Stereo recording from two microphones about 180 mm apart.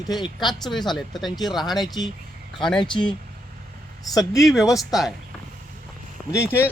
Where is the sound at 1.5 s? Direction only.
25° left (ahead or behind).